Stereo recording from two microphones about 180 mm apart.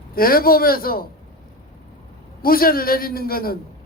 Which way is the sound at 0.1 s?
55° left (ahead or behind).